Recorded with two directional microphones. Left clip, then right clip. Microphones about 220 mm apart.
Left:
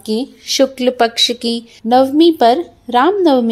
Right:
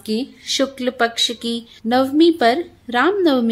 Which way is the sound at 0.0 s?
15° left (ahead or behind).